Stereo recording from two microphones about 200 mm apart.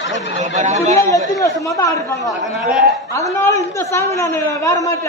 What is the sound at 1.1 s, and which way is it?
Speech, 15° left (ahead or behind).